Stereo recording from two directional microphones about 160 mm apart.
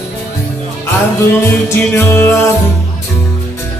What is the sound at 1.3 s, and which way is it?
Music, 15° left (ahead or behind).